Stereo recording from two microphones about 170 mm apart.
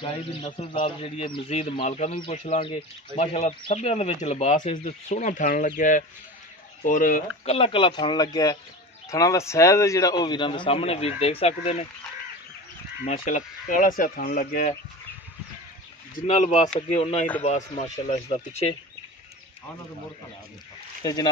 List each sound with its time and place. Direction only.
0.5 s speech: 35° left (ahead or behind); by 7.2 s 50° left (ahead or behind)
7.4 s a man's voice: 35° left (ahead or behind)
13.0 s speech: 50° left (ahead or behind)
16.2 s speech: 45° left (ahead or behind)
21.0 s a man's voice: 25° left (ahead or behind)